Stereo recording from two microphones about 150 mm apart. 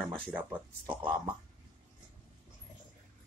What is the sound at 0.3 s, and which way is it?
Speech, 10° right (ahead or behind).